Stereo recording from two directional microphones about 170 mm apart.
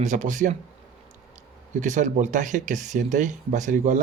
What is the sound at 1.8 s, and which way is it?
Speech, 45° right (ahead or behind).